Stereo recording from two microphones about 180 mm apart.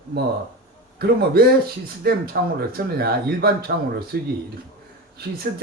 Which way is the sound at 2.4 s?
60° right (ahead or behind).